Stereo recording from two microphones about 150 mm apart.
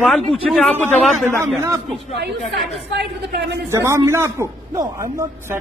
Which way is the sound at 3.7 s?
20° right (ahead or behind).